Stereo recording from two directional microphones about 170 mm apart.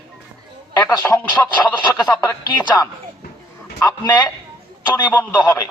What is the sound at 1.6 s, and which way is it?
Speech, 25° left (ahead or behind).